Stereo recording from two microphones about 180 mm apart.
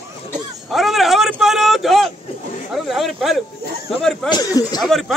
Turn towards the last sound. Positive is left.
turn(degrees=0)  # may be behind; listen again after turning